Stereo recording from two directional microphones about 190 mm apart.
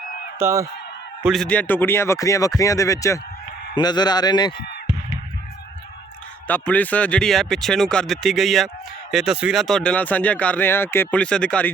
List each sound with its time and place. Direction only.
0.3 s speech: 15° right (ahead or behind)
1.2 s speech: centre (ahead or behind); by 4.6 s 20° left (ahead or behind)
6.5 s speech: 10° left (ahead or behind)